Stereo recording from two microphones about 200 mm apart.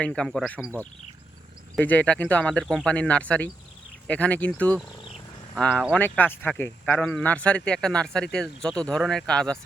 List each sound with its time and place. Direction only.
0.0 s speech: 5° left (ahead or behind)
1.7 s speech: 10° left (ahead or behind)